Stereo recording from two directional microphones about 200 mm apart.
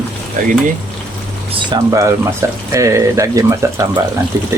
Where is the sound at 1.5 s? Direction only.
20° right (ahead or behind).